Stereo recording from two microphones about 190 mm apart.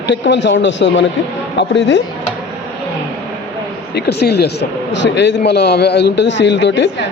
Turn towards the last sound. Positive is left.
turn(degrees=65)  # may be behind; listen again after turning